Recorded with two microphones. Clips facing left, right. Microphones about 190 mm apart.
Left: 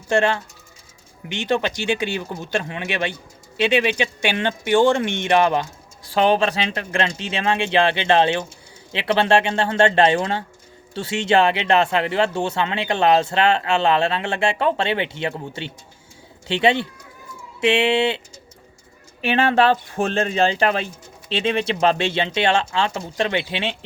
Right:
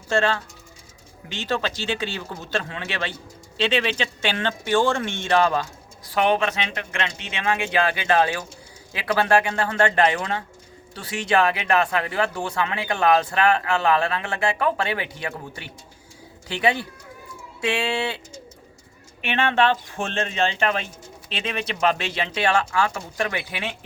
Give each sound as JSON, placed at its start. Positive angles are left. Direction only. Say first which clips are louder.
{"t": 0.1, "sound": "speech", "louder": "left 3 dB", "side_deg": 15}
{"t": 6.1, "sound": "speech", "louder": "left 3 dB", "side_deg": 30}
{"t": 19.2, "sound": "speech", "louder": "left 4 dB", "side_deg": 35}